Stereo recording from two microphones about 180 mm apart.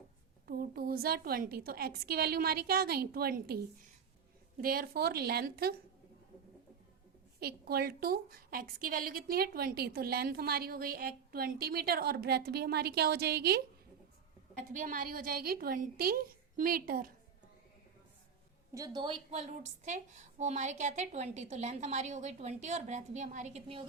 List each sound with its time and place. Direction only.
0.4 s a woman's voice: 55° right (ahead or behind)
4.6 s a woman's voice: 55° right (ahead or behind)
7.3 s a woman's voice: 60° right (ahead or behind)
14.7 s a woman's voice: 45° right (ahead or behind)
18.7 s a woman's voice: 20° right (ahead or behind)